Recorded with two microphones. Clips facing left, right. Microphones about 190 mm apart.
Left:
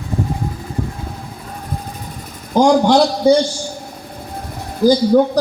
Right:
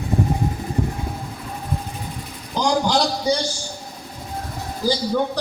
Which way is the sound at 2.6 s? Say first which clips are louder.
Left 8 dB; 55° left (ahead or behind).